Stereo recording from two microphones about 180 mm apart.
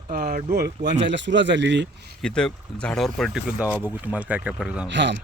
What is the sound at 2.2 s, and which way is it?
Speech, 5° left (ahead or behind).